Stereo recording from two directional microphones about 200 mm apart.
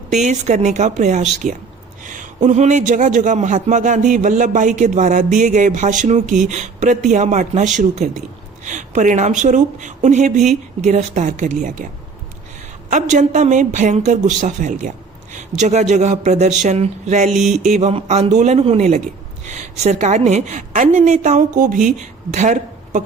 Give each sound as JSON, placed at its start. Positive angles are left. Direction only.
{"t": 0.1, "sound": "a man's voice", "side_deg": -35}
{"t": 12.9, "sound": "a man's voice", "side_deg": -40}